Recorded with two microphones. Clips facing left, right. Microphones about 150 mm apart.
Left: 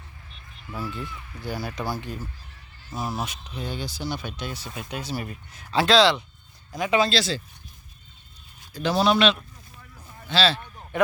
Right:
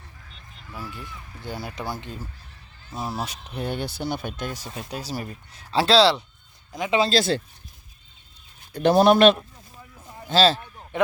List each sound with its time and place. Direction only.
0.8 s speech: 10° right (ahead or behind)
2.9 s speech: centre (ahead or behind)
3.2 s speech: 35° right (ahead or behind)
3.4 s speech: 60° right (ahead or behind)
4.7 s speech: 35° right (ahead or behind)
6.7 s speech: 25° right (ahead or behind)
7.1 s a man's voice: 50° right (ahead or behind)
8.7 s a man's voice: 55° right (ahead or behind)
10.9 s a sound: 25° right (ahead or behind)